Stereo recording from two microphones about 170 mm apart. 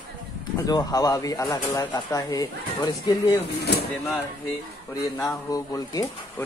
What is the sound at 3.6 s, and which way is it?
Speech, 70° left (ahead or behind).